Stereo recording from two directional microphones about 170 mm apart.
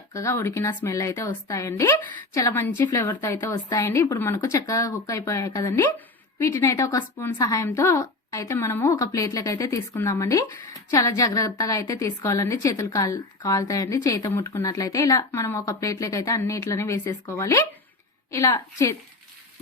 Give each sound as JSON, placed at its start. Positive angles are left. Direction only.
{"t": 0.1, "sound": "a woman's voice", "side_deg": 20}